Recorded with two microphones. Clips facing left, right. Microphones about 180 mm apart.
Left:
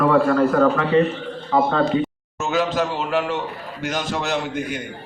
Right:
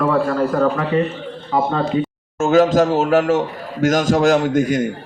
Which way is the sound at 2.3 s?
50° right (ahead or behind).